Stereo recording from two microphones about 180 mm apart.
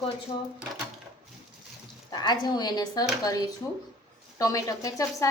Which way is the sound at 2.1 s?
25° left (ahead or behind).